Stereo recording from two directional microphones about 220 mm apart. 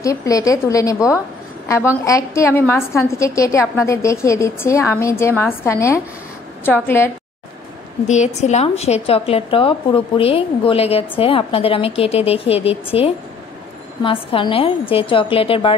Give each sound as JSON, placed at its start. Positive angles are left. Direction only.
{"t": 0.0, "sound": "a woman's voice", "side_deg": 15}
{"t": 8.1, "sound": "a woman's voice", "side_deg": 30}